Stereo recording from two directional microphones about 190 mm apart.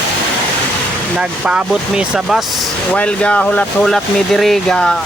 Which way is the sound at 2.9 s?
5° left (ahead or behind).